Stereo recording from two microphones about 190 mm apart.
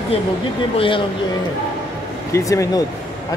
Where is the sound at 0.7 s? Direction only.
25° left (ahead or behind).